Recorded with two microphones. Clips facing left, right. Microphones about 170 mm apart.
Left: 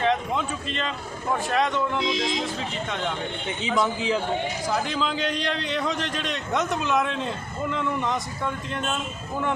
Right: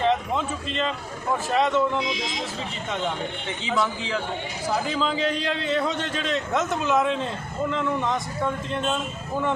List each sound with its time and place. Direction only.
0.0 s a sound: centre (ahead or behind)
1.5 s a man's voice: 5° right (ahead or behind)
3.8 s a man's voice: 20° left (ahead or behind)
4.7 s a man's voice: centre (ahead or behind)